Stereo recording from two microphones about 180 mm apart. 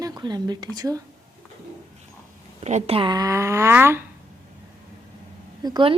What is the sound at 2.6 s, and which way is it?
Speech, 35° right (ahead or behind).